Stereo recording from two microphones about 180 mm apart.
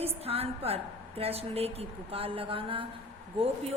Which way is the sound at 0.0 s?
35° right (ahead or behind).